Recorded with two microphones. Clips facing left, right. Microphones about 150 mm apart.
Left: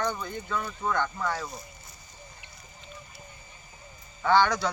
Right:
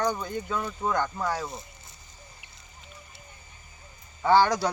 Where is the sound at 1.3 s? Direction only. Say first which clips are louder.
Right 2 dB; 25° right (ahead or behind).